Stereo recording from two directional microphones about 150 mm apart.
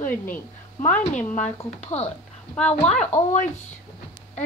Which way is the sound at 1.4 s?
50° left (ahead or behind).